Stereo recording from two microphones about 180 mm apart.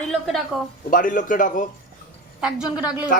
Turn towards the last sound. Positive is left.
turn(degrees=-5)  # may be behind; listen again after turning